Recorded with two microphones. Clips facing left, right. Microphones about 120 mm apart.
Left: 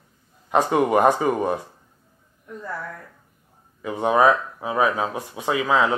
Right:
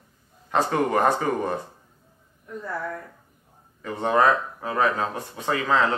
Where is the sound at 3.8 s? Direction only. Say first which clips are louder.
Left 3 dB; 10° left (ahead or behind).